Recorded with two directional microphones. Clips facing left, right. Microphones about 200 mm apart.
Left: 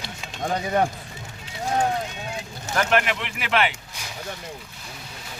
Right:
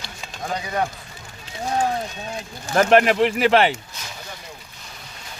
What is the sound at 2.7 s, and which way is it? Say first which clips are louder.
Speech: right 7 dB; 40° right (ahead or behind).